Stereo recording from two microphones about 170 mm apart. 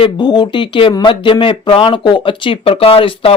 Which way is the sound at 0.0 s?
25° left (ahead or behind).